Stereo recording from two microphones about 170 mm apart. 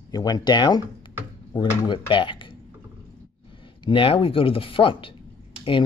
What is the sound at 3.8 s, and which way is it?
Speech, 30° left (ahead or behind).